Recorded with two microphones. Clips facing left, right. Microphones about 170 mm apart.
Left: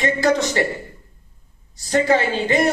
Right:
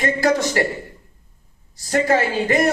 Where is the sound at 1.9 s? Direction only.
20° left (ahead or behind).